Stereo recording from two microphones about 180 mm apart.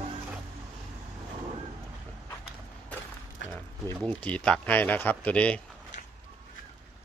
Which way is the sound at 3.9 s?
5° left (ahead or behind).